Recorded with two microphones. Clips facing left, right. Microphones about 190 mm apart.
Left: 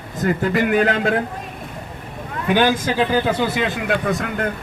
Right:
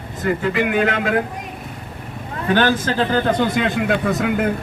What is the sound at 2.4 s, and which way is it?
Speech, 15° left (ahead or behind).